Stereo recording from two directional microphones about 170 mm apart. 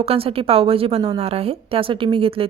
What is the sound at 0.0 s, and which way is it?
A woman's voice, 35° right (ahead or behind).